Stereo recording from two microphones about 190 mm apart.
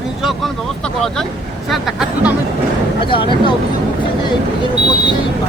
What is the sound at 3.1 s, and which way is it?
Speech, 25° left (ahead or behind).